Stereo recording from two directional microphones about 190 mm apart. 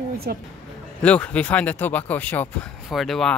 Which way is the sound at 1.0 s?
5° left (ahead or behind).